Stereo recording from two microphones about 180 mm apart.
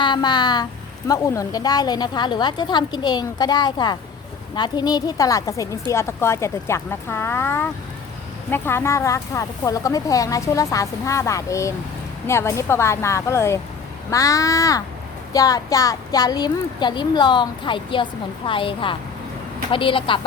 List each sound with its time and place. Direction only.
0.0 s speech: 25° left (ahead or behind)